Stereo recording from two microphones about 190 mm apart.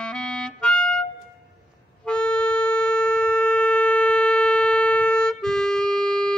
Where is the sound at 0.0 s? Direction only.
5° left (ahead or behind).